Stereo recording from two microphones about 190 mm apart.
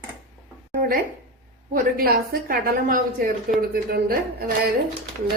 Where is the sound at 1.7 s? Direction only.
50° right (ahead or behind).